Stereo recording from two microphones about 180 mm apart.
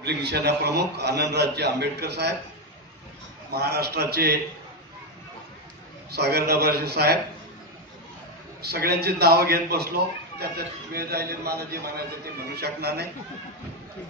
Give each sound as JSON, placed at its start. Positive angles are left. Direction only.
{"t": 0.0, "sound": "a man's voice", "side_deg": -65}
{"t": 3.5, "sound": "a man's voice", "side_deg": -65}
{"t": 6.1, "sound": "a man's voice", "side_deg": -60}
{"t": 8.6, "sound": "a man's voice", "side_deg": -60}